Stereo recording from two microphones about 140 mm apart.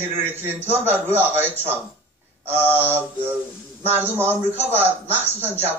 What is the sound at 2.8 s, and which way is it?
A man's voice, 15° right (ahead or behind).